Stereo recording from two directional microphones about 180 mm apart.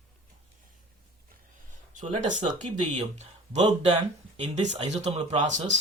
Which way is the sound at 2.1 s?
45° right (ahead or behind).